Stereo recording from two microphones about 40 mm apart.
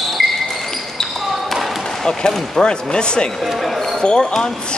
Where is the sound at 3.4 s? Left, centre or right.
Centre.